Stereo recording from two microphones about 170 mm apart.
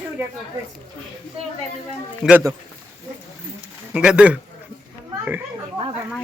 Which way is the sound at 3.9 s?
5° right (ahead or behind).